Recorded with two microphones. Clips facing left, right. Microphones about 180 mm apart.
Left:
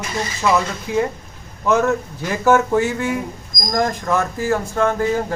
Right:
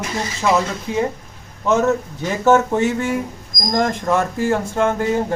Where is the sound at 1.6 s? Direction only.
20° right (ahead or behind).